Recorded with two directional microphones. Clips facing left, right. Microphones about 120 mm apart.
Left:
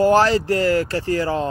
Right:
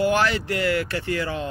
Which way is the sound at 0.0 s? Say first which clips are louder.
Left 6 dB; 35° left (ahead or behind).